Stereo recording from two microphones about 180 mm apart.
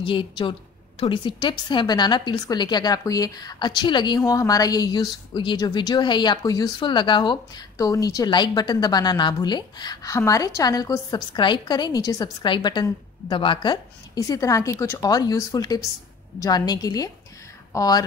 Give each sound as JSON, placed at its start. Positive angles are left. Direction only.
{"t": 0.0, "sound": "a woman's voice", "side_deg": 30}